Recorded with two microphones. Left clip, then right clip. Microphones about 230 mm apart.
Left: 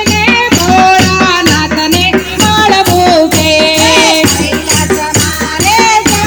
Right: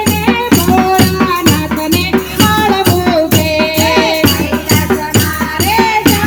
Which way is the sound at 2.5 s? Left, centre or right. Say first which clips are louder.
Left 5 dB; left.